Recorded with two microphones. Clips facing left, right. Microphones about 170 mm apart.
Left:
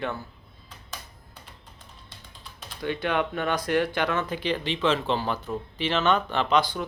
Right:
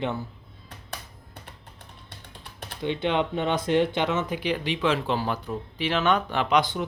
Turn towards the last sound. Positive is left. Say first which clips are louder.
# even
turn(degrees=-20)  # may be behind; listen again after turning